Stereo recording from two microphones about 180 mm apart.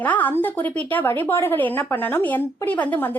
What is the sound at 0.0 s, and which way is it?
Speech, 10° left (ahead or behind).